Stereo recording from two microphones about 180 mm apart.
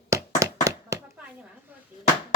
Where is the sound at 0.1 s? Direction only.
15° right (ahead or behind).